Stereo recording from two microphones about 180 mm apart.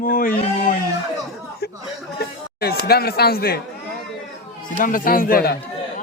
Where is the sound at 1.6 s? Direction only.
65° left (ahead or behind).